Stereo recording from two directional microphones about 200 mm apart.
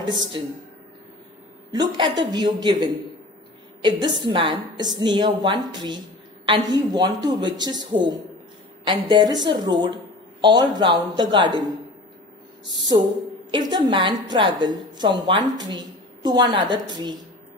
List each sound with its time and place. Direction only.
0.1 s a man's voice: 25° right (ahead or behind)
1.7 s a man's voice: 20° right (ahead or behind)
13.5 s a man's voice: 20° right (ahead or behind)